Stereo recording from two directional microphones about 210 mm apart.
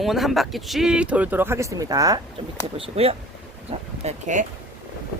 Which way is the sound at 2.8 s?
30° right (ahead or behind).